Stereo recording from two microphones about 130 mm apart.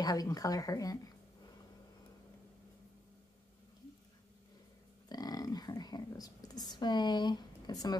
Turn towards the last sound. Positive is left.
turn(degrees=30)  # may be behind; listen again after turning